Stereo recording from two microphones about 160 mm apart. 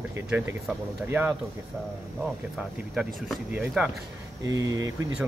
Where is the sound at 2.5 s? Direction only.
5° right (ahead or behind).